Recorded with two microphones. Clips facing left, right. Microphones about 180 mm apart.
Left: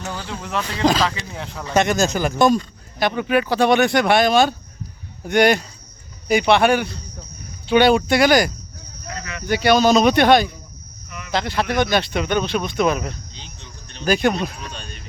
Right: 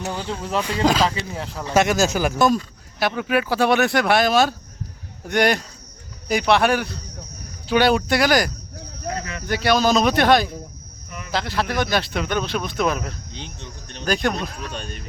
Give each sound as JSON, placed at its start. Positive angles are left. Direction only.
{"t": 0.0, "sound": "speech", "side_deg": -15}
{"t": 0.3, "sound": "speech", "side_deg": -35}
{"t": 0.6, "sound": "speech", "side_deg": -10}
{"t": 9.0, "sound": "a sound", "side_deg": -30}
{"t": 9.4, "sound": "speech", "side_deg": 0}
{"t": 13.3, "sound": "speech", "side_deg": -55}
{"t": 14.0, "sound": "speech", "side_deg": 0}